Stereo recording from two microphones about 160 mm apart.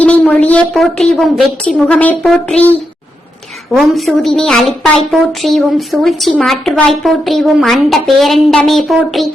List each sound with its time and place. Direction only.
0.0 s a woman's voice: 10° left (ahead or behind)